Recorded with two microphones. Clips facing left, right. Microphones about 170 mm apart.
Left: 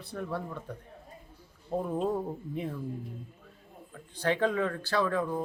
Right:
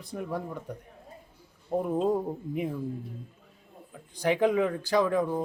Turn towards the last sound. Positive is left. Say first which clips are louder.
# right 4 dB
turn(degrees=-15)  # may be behind; listen again after turning